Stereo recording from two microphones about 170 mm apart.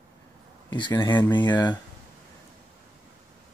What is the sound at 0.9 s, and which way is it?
Speech, 15° left (ahead or behind).